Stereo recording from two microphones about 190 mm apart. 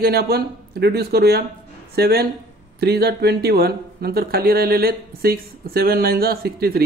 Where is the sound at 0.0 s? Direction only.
55° right (ahead or behind).